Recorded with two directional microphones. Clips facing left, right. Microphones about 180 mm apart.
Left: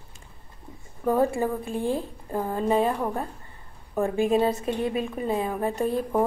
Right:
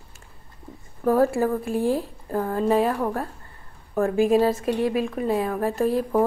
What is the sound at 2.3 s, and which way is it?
Speech, 15° left (ahead or behind).